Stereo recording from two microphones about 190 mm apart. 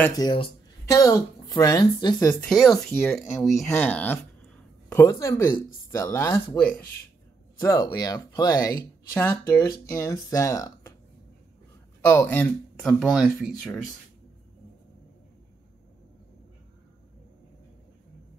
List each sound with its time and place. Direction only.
0.2 s speech: 25° left (ahead or behind)
0.8 s speech: 15° left (ahead or behind)
2.4 s speech: centre (ahead or behind)
3.2 s speech: centre (ahead or behind); by 11.0 s 15° left (ahead or behind)
12.1 s speech: 10° left (ahead or behind)